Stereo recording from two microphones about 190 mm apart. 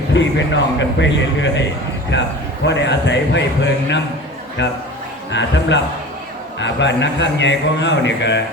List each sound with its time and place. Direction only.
0.1 s a man's voice: 70° left (ahead or behind)
4.6 s a man's voice: 70° left (ahead or behind)